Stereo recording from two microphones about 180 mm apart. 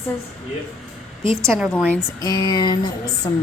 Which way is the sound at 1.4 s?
Centre (ahead or behind).